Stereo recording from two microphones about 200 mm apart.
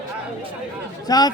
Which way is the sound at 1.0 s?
20° left (ahead or behind).